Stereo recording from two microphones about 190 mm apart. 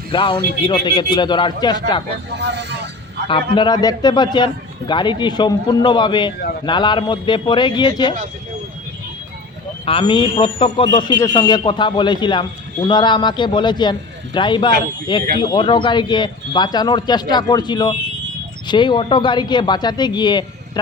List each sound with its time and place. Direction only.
0.1 s a man's voice: 25° left (ahead or behind)
2.6 s vehicle: 65° right (ahead or behind)
3.2 s a man's voice: 25° left (ahead or behind)
9.8 s a man's voice: 25° left (ahead or behind)